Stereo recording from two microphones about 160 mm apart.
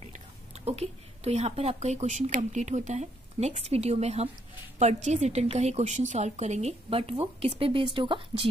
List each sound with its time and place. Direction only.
0.7 s a woman's voice: 40° right (ahead or behind)